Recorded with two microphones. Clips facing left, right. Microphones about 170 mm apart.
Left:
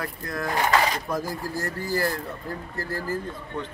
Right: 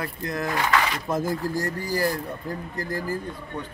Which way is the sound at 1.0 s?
20° right (ahead or behind).